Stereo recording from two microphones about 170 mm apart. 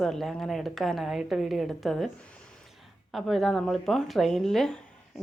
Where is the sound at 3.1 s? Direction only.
Centre (ahead or behind).